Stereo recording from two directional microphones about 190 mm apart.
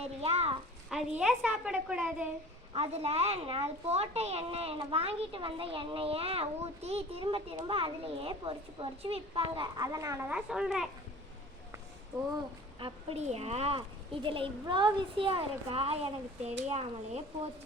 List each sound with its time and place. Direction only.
0.0 s speech: 35° right (ahead or behind)
0.9 s a woman's voice: 5° right (ahead or behind)
2.7 s speech: 30° right (ahead or behind)
10.3 s a woman's voice: 5° right (ahead or behind)
12.8 s speech: 30° right (ahead or behind)